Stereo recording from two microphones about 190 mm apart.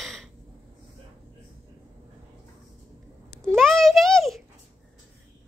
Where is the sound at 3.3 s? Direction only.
5° left (ahead or behind).